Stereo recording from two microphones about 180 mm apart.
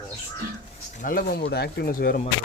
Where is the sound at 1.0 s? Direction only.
55° left (ahead or behind).